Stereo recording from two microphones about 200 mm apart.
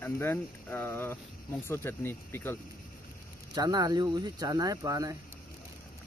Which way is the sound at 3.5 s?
20° right (ahead or behind).